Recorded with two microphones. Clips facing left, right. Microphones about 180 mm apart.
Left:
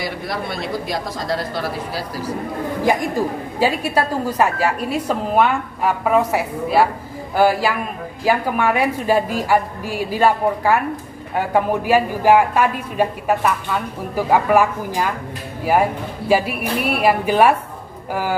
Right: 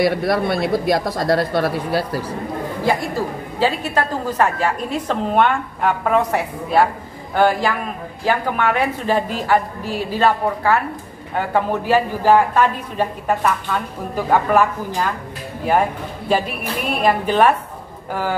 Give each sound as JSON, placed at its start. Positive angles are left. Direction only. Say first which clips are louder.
{"t": 0.0, "sound": "speech", "louder": "right 8 dB", "side_deg": -60}
{"t": 2.8, "sound": "speech", "louder": "left 2 dB", "side_deg": 15}
{"t": 16.3, "sound": "speech", "louder": "left 2 dB", "side_deg": 10}